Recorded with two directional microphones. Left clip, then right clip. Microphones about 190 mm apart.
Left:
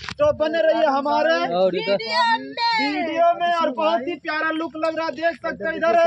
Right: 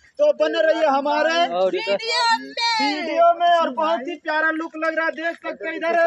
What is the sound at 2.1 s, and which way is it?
Speech, 60° right (ahead or behind).